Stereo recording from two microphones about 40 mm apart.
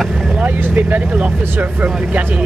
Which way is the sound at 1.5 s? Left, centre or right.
Right.